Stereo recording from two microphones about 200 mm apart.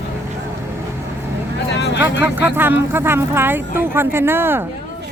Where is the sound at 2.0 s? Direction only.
10° right (ahead or behind).